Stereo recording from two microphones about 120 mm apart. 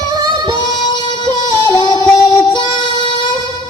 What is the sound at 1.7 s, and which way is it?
Music, 40° left (ahead or behind).